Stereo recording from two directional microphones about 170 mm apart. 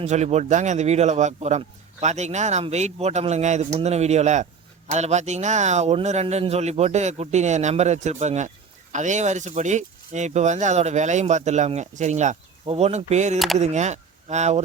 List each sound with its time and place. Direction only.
0.0 s speech: 40° right (ahead or behind)